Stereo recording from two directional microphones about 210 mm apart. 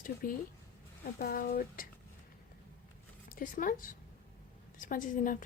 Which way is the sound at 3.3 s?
40° left (ahead or behind).